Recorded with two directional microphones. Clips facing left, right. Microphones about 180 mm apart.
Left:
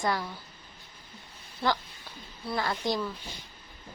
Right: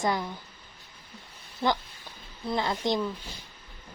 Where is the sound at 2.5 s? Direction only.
20° right (ahead or behind).